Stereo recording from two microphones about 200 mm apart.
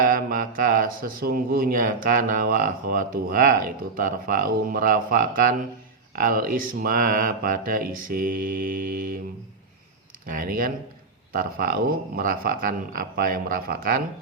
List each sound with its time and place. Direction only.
0.0 s speech: 45° right (ahead or behind)
10.2 s speech: 45° right (ahead or behind)